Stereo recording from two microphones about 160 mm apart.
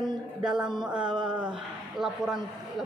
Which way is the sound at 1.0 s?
30° right (ahead or behind).